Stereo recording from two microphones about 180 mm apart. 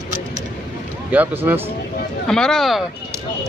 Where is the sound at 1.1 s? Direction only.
10° right (ahead or behind).